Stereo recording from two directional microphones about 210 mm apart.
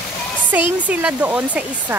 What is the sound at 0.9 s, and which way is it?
Speech, 5° right (ahead or behind).